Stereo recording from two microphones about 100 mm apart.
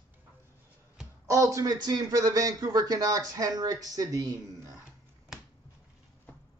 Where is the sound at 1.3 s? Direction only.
35° right (ahead or behind).